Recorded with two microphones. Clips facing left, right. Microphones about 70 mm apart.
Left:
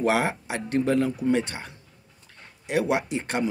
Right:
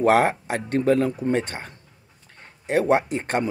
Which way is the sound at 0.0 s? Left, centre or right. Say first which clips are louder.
Right 6 dB; right.